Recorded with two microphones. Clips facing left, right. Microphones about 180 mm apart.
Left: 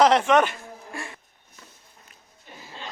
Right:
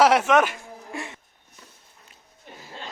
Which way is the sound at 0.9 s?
20° right (ahead or behind).